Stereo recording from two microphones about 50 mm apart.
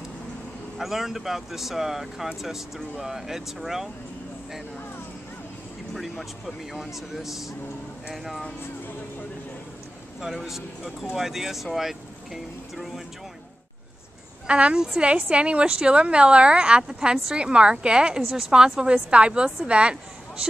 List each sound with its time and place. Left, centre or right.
0.7 s speech: centre
5.9 s speech: centre
10.2 s speech: centre
14.5 s a woman's voice: right